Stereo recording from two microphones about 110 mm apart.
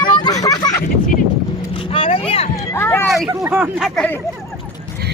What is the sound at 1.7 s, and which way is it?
Vehicle, 55° left (ahead or behind).